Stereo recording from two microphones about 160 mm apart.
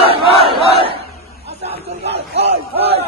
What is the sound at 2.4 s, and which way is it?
Crowd, 90° right.